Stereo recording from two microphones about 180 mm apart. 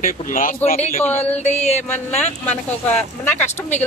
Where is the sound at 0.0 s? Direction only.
50° left (ahead or behind).